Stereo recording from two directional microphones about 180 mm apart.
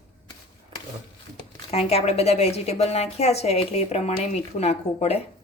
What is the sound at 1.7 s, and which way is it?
Speech, 35° left (ahead or behind).